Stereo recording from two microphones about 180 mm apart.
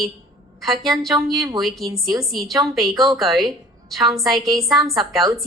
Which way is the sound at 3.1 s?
Centre (ahead or behind).